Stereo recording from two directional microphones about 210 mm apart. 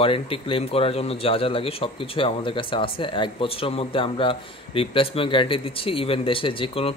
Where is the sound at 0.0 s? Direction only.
25° left (ahead or behind).